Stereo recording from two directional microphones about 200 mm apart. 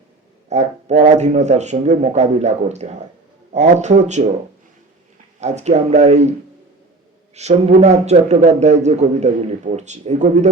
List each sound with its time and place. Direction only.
0.5 s a man's voice: 35° right (ahead or behind)
5.4 s a man's voice: 35° right (ahead or behind)
7.4 s a man's voice: 35° right (ahead or behind)